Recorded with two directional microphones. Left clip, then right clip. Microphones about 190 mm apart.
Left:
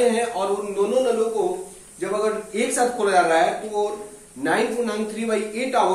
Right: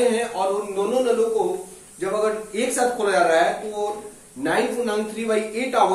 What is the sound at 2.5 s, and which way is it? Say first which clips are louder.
Speech: left 1 dB; 10° left (ahead or behind).